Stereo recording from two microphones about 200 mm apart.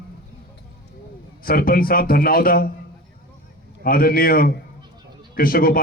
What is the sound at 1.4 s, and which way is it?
A man's voice, 45° left (ahead or behind).